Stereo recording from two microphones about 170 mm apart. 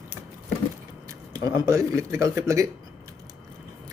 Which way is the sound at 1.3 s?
20° right (ahead or behind).